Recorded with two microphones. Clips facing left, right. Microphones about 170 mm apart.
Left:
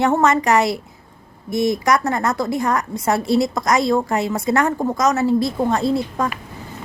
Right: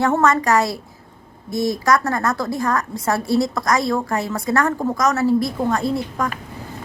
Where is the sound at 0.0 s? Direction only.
20° left (ahead or behind).